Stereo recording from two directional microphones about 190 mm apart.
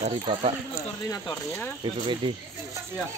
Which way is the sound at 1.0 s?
15° left (ahead or behind).